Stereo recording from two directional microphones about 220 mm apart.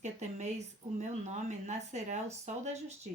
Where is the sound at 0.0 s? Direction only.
30° right (ahead or behind).